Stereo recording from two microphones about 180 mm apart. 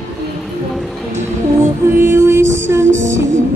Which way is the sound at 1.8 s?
15° right (ahead or behind).